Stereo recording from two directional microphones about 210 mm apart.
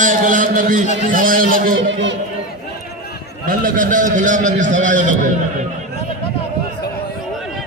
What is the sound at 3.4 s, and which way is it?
A man's voice, 40° right (ahead or behind).